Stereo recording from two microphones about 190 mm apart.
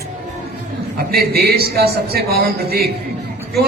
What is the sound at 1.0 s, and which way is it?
A man's voice, 55° right (ahead or behind).